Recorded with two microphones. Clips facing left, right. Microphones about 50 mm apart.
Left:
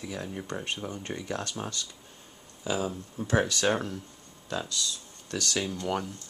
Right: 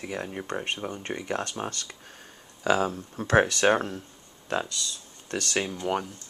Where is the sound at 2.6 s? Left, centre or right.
Right.